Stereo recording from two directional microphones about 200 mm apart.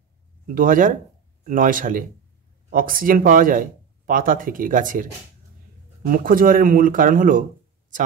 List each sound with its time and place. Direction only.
0.5 s speech: 40° right (ahead or behind)
6.0 s speech: 45° right (ahead or behind)